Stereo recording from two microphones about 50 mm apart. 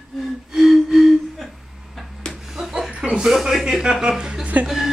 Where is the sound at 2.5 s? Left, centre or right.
Centre.